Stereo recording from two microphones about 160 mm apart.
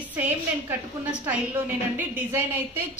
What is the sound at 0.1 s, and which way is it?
Speech, 10° right (ahead or behind).